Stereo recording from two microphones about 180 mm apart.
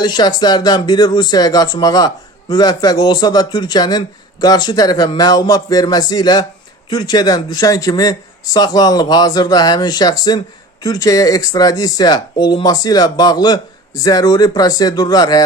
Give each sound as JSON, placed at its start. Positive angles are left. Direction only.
{"t": 0.0, "sound": "speech", "side_deg": 25}